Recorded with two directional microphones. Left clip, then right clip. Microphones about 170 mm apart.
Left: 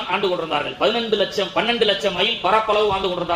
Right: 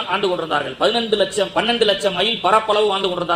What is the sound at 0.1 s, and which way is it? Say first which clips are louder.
A man's voice: right 1 dB; 20° right (ahead or behind).